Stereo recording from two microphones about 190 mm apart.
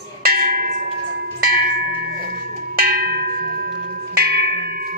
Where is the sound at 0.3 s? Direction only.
50° right (ahead or behind).